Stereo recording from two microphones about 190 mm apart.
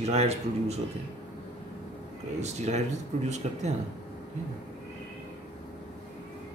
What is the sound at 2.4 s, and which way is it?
Speech, 35° right (ahead or behind).